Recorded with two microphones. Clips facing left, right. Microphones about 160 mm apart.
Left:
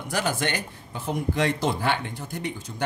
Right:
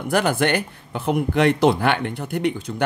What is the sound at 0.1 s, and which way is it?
Speech, 55° right (ahead or behind).